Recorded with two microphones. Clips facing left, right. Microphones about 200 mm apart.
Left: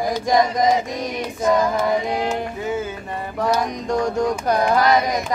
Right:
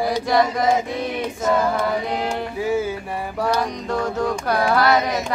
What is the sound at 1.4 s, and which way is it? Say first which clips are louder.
Mantra: left 2 dB; 15° left (ahead or behind).